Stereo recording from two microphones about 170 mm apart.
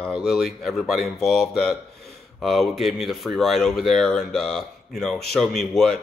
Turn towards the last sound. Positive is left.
turn(degrees=0)  # may be behind; listen again after turning